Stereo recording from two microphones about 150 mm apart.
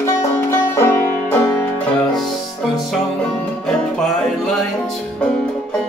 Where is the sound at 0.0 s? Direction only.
15° left (ahead or behind).